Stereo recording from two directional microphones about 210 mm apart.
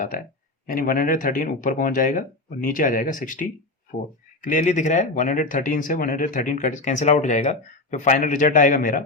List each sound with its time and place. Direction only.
0.7 s speech: 40° left (ahead or behind)